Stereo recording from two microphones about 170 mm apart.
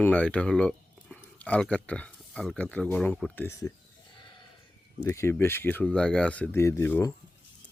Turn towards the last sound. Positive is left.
turn(degrees=15)  # may be behind; listen again after turning